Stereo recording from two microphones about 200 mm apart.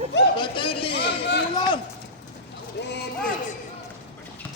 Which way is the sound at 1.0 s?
55° left (ahead or behind).